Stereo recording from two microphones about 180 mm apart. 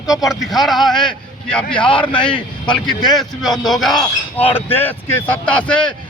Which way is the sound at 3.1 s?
Centre (ahead or behind).